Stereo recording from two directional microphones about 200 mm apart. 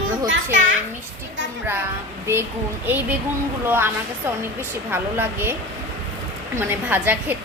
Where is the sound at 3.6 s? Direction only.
10° right (ahead or behind).